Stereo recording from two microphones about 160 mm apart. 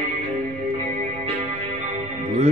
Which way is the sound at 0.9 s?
40° right (ahead or behind).